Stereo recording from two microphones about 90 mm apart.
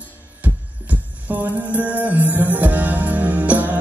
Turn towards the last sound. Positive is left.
turn(degrees=-15)  # may be behind; listen again after turning